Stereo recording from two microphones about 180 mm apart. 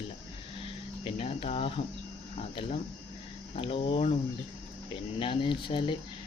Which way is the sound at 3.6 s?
30° left (ahead or behind).